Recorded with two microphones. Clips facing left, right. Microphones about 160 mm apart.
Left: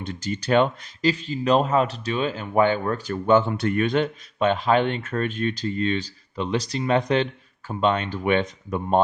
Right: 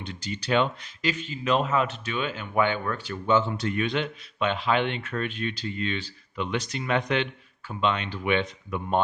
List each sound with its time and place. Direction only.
0.0 s speech: 45° left (ahead or behind)